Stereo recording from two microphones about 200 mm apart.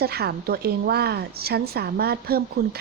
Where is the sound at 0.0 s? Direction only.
55° right (ahead or behind).